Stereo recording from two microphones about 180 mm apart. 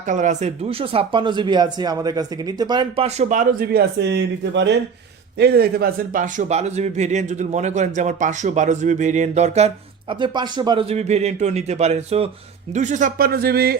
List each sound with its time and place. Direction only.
0.0 s speech: 45° right (ahead or behind); by 4.7 s 75° right (ahead or behind)
5.4 s speech: 60° right (ahead or behind); by 10.8 s 25° right (ahead or behind)
10.8 s speech: 35° right (ahead or behind); by 13.7 s 60° right (ahead or behind)